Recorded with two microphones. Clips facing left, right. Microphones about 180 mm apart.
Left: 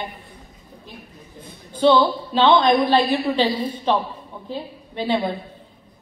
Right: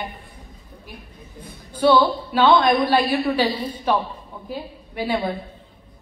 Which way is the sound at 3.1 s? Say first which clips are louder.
Left 1 dB; 25° left (ahead or behind).